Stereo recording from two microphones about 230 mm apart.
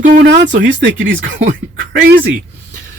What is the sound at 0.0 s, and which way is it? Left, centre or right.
Speech, right.